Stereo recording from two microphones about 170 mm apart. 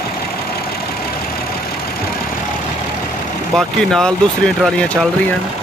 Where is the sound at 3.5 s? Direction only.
5° left (ahead or behind).